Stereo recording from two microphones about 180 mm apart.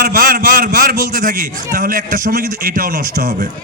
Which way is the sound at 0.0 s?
55° right (ahead or behind).